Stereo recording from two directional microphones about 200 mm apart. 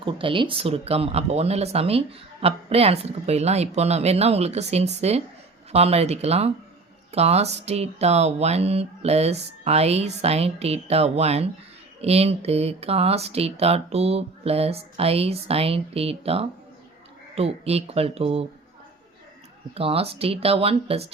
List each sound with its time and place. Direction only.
0.0 s speech: 25° right (ahead or behind)
19.7 s speech: 30° right (ahead or behind)